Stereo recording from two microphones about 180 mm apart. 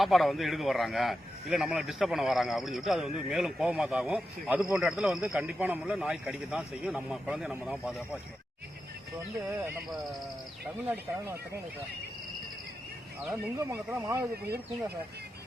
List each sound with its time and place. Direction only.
0.0 s speech: centre (ahead or behind)
13.3 s speech: 15° right (ahead or behind)